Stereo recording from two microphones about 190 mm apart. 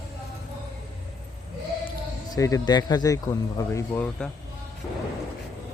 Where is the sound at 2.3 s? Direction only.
20° left (ahead or behind).